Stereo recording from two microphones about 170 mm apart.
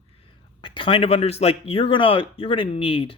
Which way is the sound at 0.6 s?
30° left (ahead or behind).